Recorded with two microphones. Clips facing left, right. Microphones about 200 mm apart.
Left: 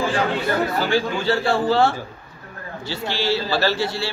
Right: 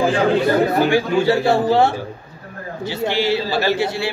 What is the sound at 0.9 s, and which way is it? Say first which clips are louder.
A man's voice: right 5 dB; 20° right (ahead or behind).